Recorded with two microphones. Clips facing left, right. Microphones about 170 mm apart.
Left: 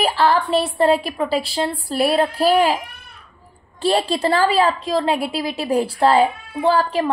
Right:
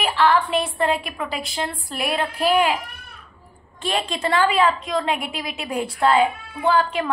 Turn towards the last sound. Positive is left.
turn(degrees=35)  # may be behind; listen again after turning